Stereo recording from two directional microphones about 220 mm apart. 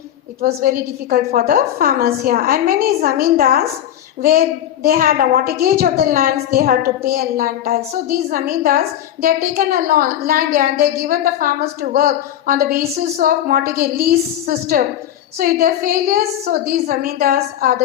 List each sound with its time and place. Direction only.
0.6 s a woman's voice: 40° right (ahead or behind)